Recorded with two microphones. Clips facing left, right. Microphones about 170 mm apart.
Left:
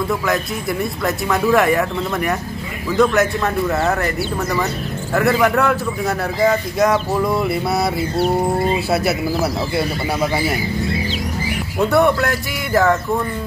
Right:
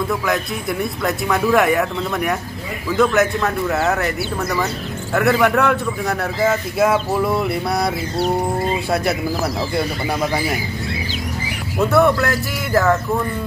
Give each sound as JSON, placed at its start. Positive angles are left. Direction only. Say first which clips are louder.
{"t": 0.1, "sound": "a man's voice", "louder": "left 1 dB", "side_deg": 0}
{"t": 5.1, "sound": "a man's voice", "louder": "even", "side_deg": 0}
{"t": 9.8, "sound": "a man's voice", "louder": "left 1 dB", "side_deg": 0}
{"t": 11.8, "sound": "a man's voice", "louder": "even", "side_deg": 0}